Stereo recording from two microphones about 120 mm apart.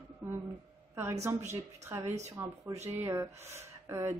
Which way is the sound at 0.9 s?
20° right (ahead or behind).